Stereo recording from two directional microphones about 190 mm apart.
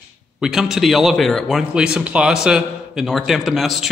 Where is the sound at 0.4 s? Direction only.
Centre (ahead or behind).